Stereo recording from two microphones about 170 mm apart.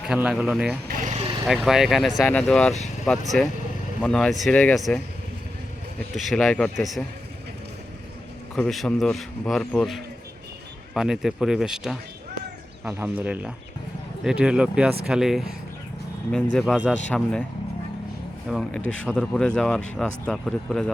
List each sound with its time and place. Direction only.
0.1 s speech: 5° right (ahead or behind)
0.9 s vehicle: 55° right (ahead or behind)
1.1 s vehicle: 30° right (ahead or behind)
1.5 s speech: 5° right (ahead or behind)
6.1 s speech: centre (ahead or behind)
8.5 s speech: 5° left (ahead or behind)
18.4 s speech: centre (ahead or behind)